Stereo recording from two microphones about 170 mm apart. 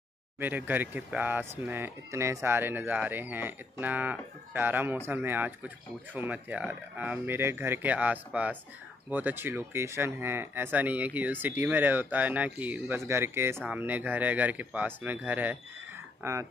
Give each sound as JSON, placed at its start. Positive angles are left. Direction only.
{"t": 0.4, "sound": "speech", "side_deg": -10}